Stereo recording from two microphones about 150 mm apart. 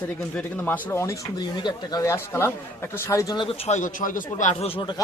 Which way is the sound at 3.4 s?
45° left (ahead or behind).